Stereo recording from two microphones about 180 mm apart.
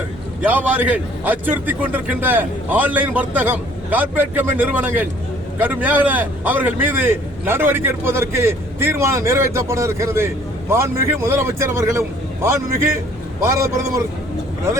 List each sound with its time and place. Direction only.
0.4 s a man's voice: 10° right (ahead or behind)